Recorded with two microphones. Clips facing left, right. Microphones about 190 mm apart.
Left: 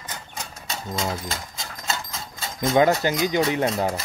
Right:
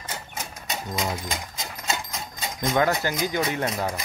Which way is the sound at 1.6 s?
15° right (ahead or behind).